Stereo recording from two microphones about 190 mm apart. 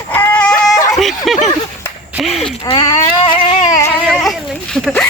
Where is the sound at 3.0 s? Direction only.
25° left (ahead or behind).